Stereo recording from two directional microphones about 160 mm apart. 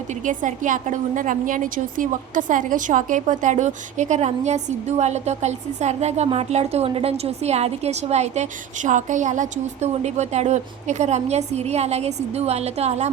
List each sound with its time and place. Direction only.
0.1 s a woman's voice: 50° right (ahead or behind)